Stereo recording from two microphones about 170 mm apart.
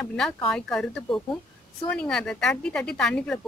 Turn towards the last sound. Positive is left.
turn(degrees=5)  # may be behind; listen again after turning